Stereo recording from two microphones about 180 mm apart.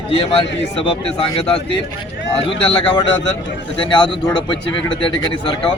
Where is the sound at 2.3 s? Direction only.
30° left (ahead or behind).